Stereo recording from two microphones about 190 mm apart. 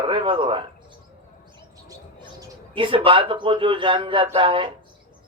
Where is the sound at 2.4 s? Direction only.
25° right (ahead or behind).